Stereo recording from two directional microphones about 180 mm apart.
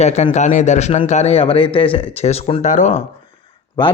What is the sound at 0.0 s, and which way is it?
A man's voice, 40° left (ahead or behind).